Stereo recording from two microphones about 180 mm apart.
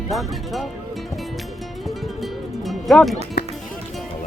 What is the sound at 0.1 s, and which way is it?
Speech, centre (ahead or behind).